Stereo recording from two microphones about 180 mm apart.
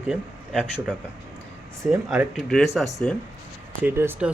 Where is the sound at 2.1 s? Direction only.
Centre (ahead or behind).